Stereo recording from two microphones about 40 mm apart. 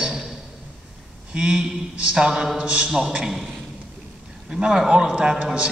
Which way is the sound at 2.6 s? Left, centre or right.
Right.